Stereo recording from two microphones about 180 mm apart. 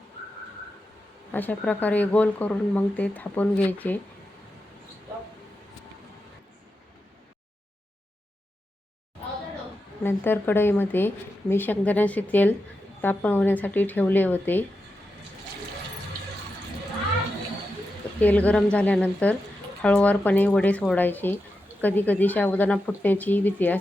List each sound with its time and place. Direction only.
1.3 s speech: 10° left (ahead or behind)
10.0 s speech: 10° left (ahead or behind)
18.2 s speech: 10° left (ahead or behind)